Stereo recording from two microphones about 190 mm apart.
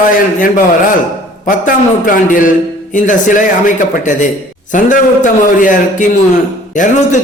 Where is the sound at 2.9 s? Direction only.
45° left (ahead or behind).